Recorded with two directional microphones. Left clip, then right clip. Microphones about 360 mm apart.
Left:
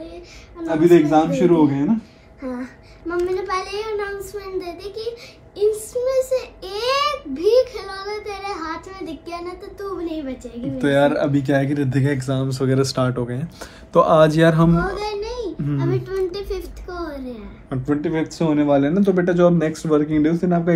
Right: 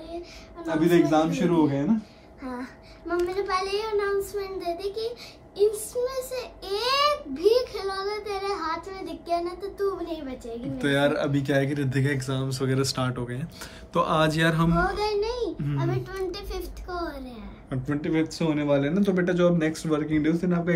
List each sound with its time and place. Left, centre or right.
0.6 s a child's voice: centre
10.8 s speech: centre
14.7 s a child's voice: right
17.6 s speech: centre